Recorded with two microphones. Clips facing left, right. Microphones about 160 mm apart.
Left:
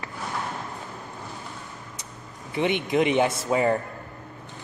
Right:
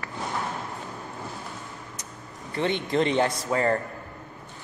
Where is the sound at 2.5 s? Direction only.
15° left (ahead or behind).